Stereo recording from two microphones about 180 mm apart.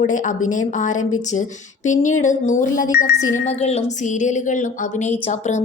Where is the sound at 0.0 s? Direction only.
45° left (ahead or behind).